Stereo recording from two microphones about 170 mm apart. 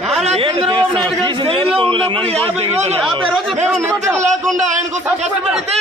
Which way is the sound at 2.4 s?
35° right (ahead or behind).